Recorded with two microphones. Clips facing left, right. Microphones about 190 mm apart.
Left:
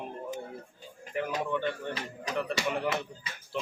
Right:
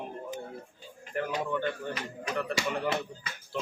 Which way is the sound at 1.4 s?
Centre (ahead or behind).